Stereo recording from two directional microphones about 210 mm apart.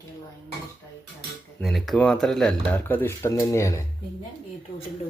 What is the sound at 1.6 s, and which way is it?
Speech, centre (ahead or behind).